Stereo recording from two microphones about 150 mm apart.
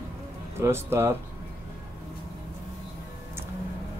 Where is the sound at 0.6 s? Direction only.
15° right (ahead or behind).